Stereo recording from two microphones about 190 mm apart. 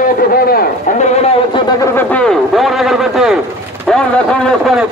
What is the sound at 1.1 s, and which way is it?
Speech, 35° left (ahead or behind).